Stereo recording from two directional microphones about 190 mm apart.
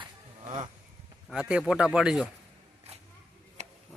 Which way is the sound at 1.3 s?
5° right (ahead or behind).